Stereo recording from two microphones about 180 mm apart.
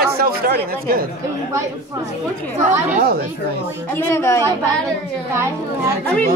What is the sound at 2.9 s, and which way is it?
Speech, 55° right (ahead or behind).